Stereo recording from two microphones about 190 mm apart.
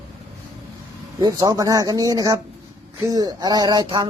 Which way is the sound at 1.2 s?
20° right (ahead or behind).